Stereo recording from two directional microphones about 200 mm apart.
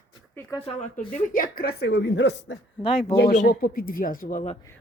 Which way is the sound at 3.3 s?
40° left (ahead or behind).